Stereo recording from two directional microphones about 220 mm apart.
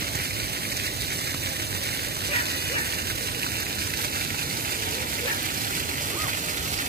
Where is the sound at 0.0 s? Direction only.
45° right (ahead or behind).